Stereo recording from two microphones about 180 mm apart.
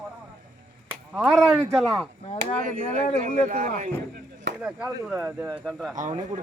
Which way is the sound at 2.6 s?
45° right (ahead or behind).